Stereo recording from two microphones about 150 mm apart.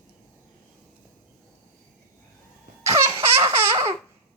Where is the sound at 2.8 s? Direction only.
20° right (ahead or behind).